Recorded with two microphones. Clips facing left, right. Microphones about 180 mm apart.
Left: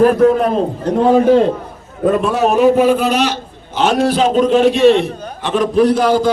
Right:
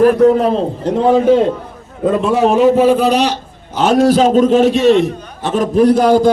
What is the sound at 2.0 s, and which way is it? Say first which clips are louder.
A man's voice: right 1 dB; 20° right (ahead or behind).